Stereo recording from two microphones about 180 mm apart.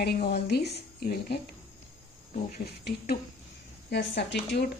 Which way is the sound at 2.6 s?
60° left (ahead or behind).